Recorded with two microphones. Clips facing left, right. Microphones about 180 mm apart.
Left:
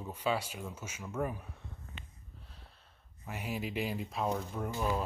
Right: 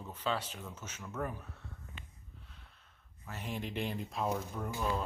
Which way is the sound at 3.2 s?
10° left (ahead or behind).